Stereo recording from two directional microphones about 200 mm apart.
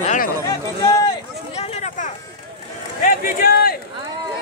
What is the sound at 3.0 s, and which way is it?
Speech, 50° left (ahead or behind).